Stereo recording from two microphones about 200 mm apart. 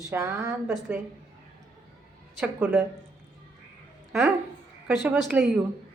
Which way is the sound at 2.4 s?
10° right (ahead or behind).